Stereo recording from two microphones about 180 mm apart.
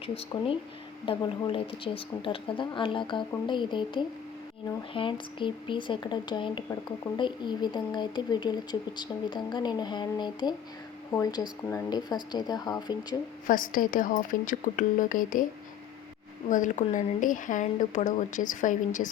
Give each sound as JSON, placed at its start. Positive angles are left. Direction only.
{"t": 0.0, "sound": "speech", "side_deg": 30}
{"t": 13.5, "sound": "speech", "side_deg": 50}
{"t": 16.5, "sound": "speech", "side_deg": 45}